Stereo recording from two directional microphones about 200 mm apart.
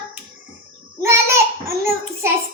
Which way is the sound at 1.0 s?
15° right (ahead or behind).